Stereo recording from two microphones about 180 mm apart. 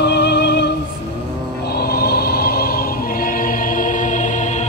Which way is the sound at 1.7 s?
60° left (ahead or behind).